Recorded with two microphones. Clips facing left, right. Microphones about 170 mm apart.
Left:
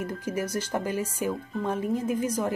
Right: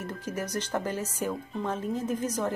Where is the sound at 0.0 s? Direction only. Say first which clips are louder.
Left 4 dB; 10° left (ahead or behind).